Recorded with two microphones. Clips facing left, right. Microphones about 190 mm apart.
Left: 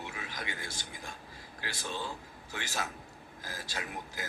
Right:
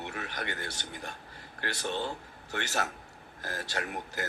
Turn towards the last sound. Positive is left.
turn(degrees=-70)  # may be behind; listen again after turning